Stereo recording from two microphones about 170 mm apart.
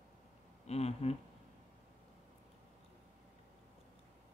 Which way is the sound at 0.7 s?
40° left (ahead or behind).